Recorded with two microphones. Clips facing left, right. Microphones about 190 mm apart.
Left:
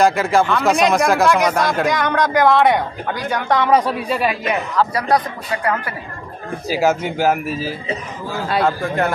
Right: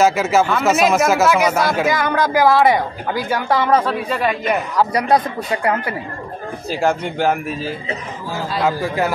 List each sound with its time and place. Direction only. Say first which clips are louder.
0.0 s speech: even; 5° right (ahead or behind)
3.7 s speech: left 1 dB; 10° left (ahead or behind)
4.7 s a man's voice: right 1 dB; 20° right (ahead or behind)
6.7 s a man's voice: left 2 dB; 5° left (ahead or behind)